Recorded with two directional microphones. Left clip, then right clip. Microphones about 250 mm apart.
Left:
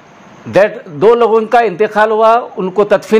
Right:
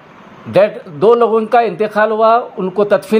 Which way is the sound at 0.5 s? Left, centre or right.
Left.